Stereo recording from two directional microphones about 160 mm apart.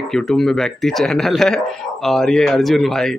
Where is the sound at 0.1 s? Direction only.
5° left (ahead or behind).